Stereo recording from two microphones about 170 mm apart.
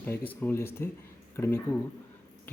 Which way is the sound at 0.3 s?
15° left (ahead or behind).